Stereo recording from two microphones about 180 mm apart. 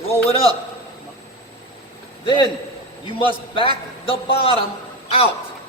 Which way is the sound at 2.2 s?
25° left (ahead or behind).